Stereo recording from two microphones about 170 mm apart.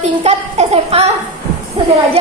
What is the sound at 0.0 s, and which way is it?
Speech, 40° right (ahead or behind).